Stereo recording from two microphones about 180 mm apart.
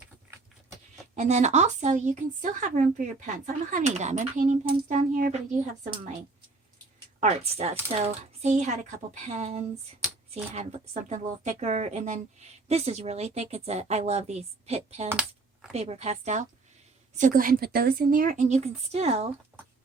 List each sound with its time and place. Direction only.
0.3 s vehicle: 15° right (ahead or behind)
1.1 s speech: 40° right (ahead or behind)
7.2 s a woman's voice: 35° right (ahead or behind)